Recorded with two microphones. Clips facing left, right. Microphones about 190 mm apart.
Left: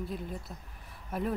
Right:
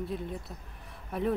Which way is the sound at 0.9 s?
Centre (ahead or behind).